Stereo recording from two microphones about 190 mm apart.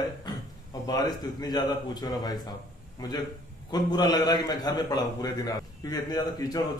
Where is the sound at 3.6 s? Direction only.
20° left (ahead or behind).